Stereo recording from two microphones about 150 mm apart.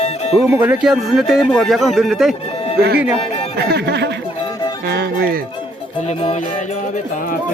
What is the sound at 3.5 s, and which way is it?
Speech, 90° right.